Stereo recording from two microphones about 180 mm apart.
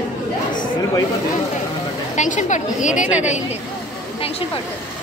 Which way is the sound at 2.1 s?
45° left (ahead or behind).